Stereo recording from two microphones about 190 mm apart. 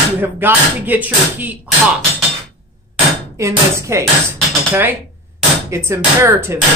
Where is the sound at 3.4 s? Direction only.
15° right (ahead or behind).